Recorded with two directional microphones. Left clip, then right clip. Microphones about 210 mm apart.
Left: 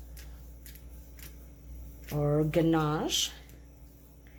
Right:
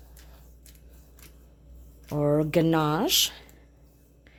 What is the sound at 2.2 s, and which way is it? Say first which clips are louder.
A woman's voice: right 4 dB; 50° right (ahead or behind).